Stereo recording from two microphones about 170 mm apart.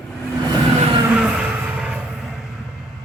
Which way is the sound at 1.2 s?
5° right (ahead or behind).